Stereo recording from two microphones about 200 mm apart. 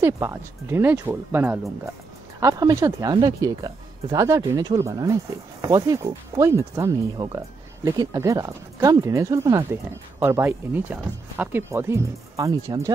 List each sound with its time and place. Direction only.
0.0 s speech: 10° right (ahead or behind)